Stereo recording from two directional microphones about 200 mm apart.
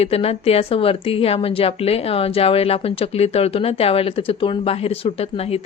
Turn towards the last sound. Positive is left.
turn(degrees=30)  # may be behind; listen again after turning